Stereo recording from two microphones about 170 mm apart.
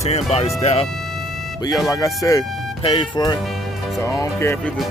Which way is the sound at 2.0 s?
20° left (ahead or behind).